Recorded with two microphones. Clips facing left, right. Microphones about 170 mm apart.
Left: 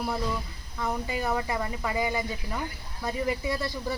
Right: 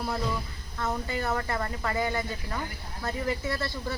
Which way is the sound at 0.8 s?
10° left (ahead or behind).